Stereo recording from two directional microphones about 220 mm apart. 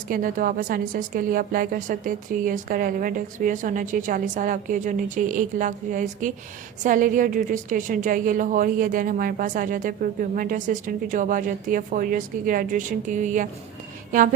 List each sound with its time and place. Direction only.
0.1 s a woman's voice: 40° right (ahead or behind)